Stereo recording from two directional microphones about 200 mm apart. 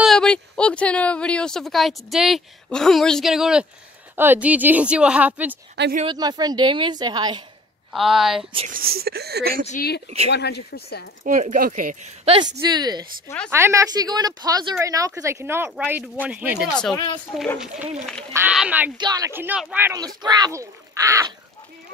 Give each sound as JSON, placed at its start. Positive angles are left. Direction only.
{"t": 0.0, "sound": "a woman's voice", "side_deg": 5}
{"t": 6.0, "sound": "a woman's voice", "side_deg": -20}
{"t": 7.9, "sound": "speech", "side_deg": 0}
{"t": 8.5, "sound": "speech", "side_deg": -40}
{"t": 9.7, "sound": "a woman's voice", "side_deg": 50}
{"t": 10.0, "sound": "speech", "side_deg": -30}
{"t": 10.3, "sound": "speech", "side_deg": 55}
{"t": 11.2, "sound": "speech", "side_deg": -40}
{"t": 12.4, "sound": "a woman's voice", "side_deg": -20}
{"t": 18.9, "sound": "a woman's voice", "side_deg": -20}